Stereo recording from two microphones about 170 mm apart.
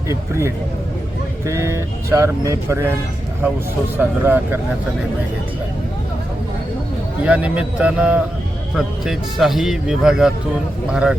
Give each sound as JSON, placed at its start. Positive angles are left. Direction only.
{"t": 0.1, "sound": "speech", "side_deg": -15}
{"t": 3.9, "sound": "speech", "side_deg": -10}
{"t": 7.3, "sound": "speech", "side_deg": -5}